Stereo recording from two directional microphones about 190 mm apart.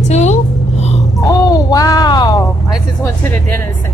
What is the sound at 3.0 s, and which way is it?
Speech, 10° left (ahead or behind).